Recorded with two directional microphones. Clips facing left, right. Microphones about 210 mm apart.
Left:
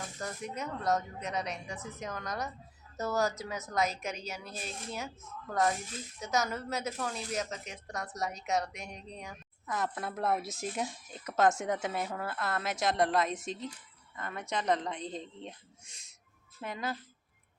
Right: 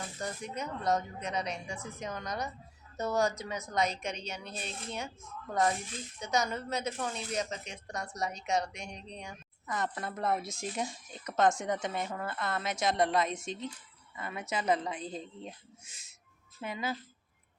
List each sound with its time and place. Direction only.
0.2 s a woman's voice: centre (ahead or behind)